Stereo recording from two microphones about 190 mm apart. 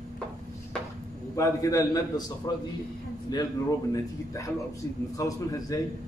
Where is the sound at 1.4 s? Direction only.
15° left (ahead or behind).